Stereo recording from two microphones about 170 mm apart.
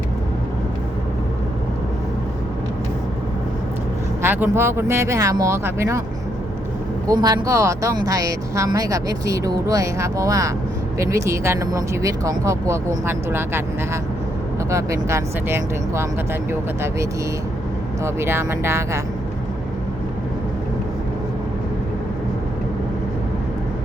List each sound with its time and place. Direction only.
4.2 s speech: 15° right (ahead or behind)
7.1 s speech: 25° right (ahead or behind)